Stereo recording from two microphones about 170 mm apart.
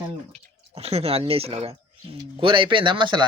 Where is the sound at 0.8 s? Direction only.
35° right (ahead or behind).